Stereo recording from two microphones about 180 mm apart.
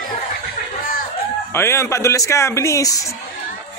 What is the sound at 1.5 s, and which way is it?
Speech, 15° left (ahead or behind).